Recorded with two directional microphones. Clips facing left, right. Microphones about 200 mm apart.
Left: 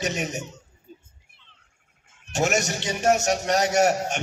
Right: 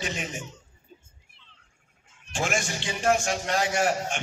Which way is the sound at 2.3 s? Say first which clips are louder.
Left 5 dB; 40° left (ahead or behind).